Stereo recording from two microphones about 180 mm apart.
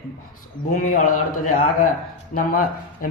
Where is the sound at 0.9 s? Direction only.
50° left (ahead or behind).